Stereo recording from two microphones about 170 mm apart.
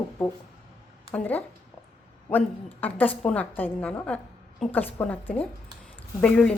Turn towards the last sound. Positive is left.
turn(degrees=5)  # may be behind; listen again after turning